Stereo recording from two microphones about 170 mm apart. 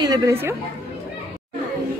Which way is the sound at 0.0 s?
20° right (ahead or behind).